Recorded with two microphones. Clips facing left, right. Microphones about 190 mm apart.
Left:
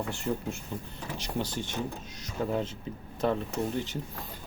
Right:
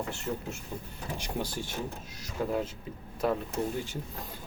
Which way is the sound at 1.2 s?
10° right (ahead or behind).